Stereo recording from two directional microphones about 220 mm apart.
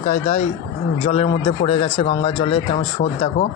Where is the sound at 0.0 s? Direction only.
35° left (ahead or behind).